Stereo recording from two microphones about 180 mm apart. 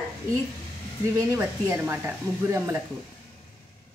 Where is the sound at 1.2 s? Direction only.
15° right (ahead or behind).